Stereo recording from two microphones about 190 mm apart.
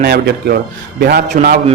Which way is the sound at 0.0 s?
55° right (ahead or behind).